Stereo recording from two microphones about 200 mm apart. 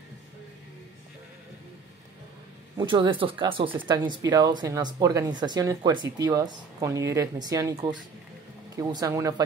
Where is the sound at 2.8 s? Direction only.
25° right (ahead or behind).